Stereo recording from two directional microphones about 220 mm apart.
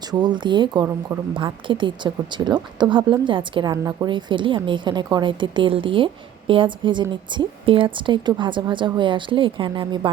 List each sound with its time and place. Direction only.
0.1 s a woman's voice: 20° right (ahead or behind)